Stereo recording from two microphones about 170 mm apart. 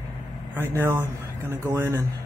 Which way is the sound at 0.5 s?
15° right (ahead or behind).